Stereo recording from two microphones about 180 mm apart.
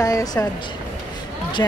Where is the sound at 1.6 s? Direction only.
20° left (ahead or behind).